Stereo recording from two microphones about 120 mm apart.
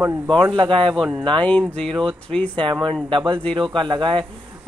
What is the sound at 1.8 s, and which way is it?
Speech, 5° left (ahead or behind).